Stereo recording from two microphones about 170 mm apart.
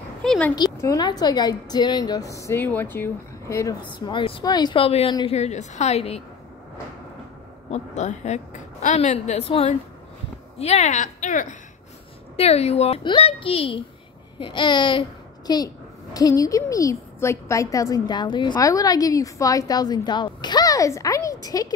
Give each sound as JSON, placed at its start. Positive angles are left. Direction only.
{"t": 0.2, "sound": "a sound", "side_deg": 5}
{"t": 0.8, "sound": "a child's voice", "side_deg": 20}
{"t": 3.8, "sound": "speech", "side_deg": 30}
{"t": 7.7, "sound": "a woman's voice", "side_deg": 45}
{"t": 12.4, "sound": "a child's voice", "side_deg": 35}